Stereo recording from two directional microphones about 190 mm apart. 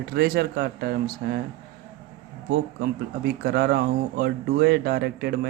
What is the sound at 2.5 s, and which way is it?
Speech, 55° right (ahead or behind).